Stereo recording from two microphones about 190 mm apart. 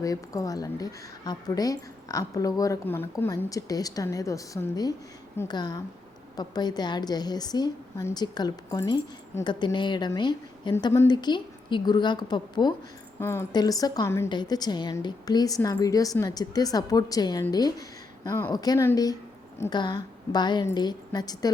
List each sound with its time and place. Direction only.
0.0 s a woman's voice: 20° left (ahead or behind)